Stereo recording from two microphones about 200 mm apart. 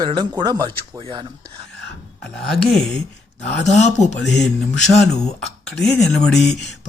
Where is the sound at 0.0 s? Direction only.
20° right (ahead or behind).